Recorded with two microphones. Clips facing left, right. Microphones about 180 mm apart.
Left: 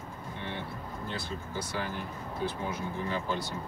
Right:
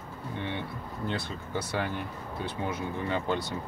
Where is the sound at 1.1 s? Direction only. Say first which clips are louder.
Right 5 dB; 65° right (ahead or behind).